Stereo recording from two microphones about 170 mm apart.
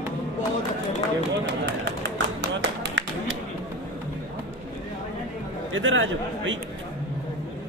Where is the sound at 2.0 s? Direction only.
90° right.